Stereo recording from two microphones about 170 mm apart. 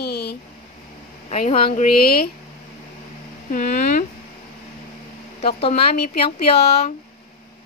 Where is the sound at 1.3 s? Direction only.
40° left (ahead or behind).